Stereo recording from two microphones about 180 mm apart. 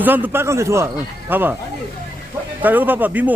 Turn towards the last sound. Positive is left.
turn(degrees=-10)  # may be behind; listen again after turning